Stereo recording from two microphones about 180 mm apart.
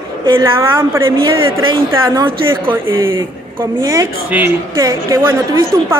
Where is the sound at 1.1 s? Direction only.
30° right (ahead or behind).